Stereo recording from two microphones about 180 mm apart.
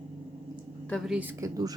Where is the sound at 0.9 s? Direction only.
5° right (ahead or behind).